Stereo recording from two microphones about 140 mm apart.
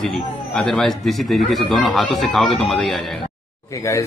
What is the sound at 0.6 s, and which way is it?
Speech, 5° left (ahead or behind).